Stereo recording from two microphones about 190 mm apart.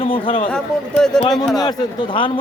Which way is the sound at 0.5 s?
5° left (ahead or behind).